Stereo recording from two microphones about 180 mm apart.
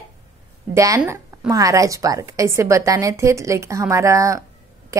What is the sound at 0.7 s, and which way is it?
A woman's voice, 15° right (ahead or behind).